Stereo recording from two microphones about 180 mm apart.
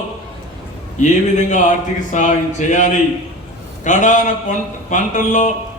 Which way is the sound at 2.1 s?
45° left (ahead or behind).